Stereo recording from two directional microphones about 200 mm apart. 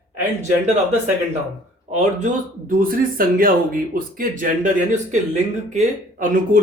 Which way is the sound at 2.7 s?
45° right (ahead or behind).